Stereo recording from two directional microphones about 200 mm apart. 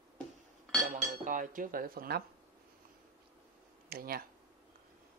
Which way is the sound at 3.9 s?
50° right (ahead or behind).